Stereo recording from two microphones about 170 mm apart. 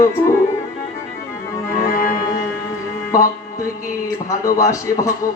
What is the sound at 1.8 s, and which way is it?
Music, 55° left (ahead or behind).